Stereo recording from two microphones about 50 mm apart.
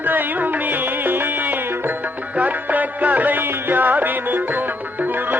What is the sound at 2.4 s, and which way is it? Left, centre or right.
Music, right.